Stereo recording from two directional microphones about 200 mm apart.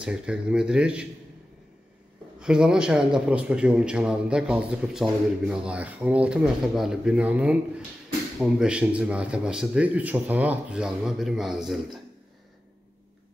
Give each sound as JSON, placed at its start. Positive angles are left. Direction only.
{"t": 0.0, "sound": "a man's voice", "side_deg": -5}
{"t": 2.4, "sound": "a man's voice", "side_deg": -5}